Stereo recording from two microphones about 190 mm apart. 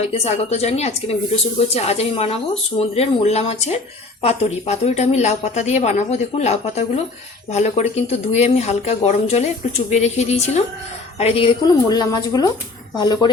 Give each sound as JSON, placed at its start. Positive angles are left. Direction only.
{"t": 0.1, "sound": "speech", "side_deg": 35}